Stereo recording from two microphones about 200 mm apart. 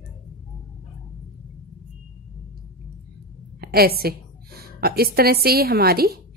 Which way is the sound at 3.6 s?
50° right (ahead or behind).